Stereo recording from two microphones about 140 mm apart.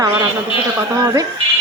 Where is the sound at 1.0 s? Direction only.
25° right (ahead or behind).